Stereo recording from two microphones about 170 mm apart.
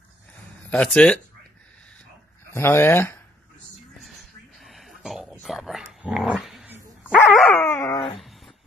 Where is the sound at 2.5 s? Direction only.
15° left (ahead or behind).